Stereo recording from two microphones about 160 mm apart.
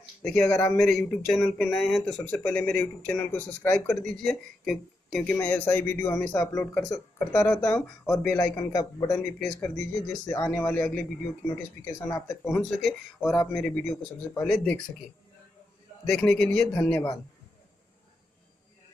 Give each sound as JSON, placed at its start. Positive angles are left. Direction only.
{"t": 0.2, "sound": "speech", "side_deg": 5}
{"t": 0.7, "sound": "speech", "side_deg": 5}
{"t": 9.4, "sound": "speech", "side_deg": 5}
{"t": 10.3, "sound": "speech", "side_deg": 15}
{"t": 16.1, "sound": "speech", "side_deg": 5}